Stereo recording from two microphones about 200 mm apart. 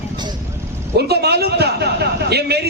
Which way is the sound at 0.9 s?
55° right (ahead or behind).